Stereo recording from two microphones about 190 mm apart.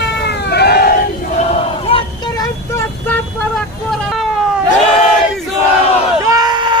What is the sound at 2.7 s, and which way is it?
Vehicle, 10° left (ahead or behind).